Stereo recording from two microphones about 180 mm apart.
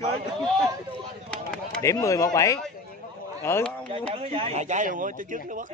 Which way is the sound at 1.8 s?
15° left (ahead or behind).